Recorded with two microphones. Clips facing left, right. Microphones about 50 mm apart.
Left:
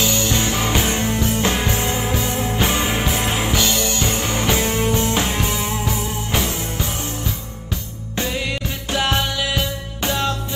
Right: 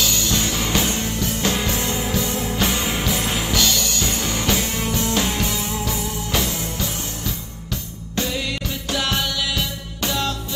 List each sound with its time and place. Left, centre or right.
0.0 s music: left